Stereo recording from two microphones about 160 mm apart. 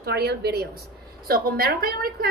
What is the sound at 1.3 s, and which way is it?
Speech, 70° right (ahead or behind).